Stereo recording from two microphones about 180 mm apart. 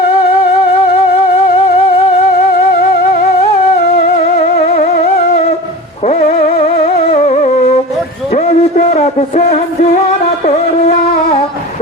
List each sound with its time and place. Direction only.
6.8 s music: 40° left (ahead or behind)
8.3 s music: 50° left (ahead or behind)